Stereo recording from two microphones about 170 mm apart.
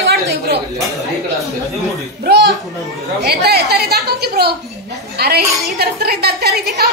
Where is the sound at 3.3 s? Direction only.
70° right (ahead or behind).